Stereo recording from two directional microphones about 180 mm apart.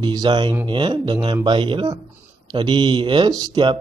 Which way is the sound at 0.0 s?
25° right (ahead or behind).